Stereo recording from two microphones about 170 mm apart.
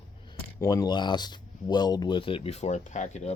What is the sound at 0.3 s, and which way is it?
Speech, 20° left (ahead or behind).